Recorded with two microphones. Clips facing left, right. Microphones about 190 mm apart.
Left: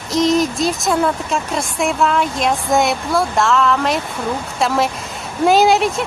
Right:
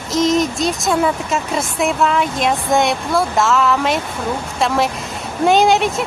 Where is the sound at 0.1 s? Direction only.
Centre (ahead or behind).